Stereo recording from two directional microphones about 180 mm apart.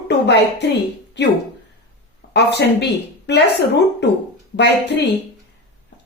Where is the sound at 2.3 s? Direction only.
70° left (ahead or behind).